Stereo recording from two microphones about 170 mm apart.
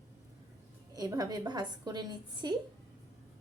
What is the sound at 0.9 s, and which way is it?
A woman's voice, 20° right (ahead or behind).